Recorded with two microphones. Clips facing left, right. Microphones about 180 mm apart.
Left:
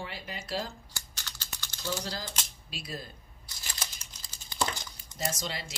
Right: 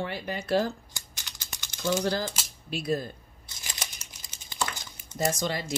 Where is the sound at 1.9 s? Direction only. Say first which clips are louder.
Right 9 dB; 65° right (ahead or behind).